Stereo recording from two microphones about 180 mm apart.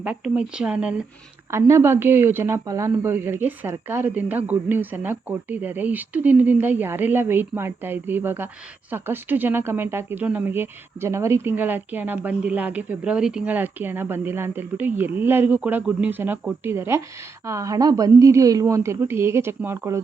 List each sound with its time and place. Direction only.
0.0 s speech: 5° right (ahead or behind)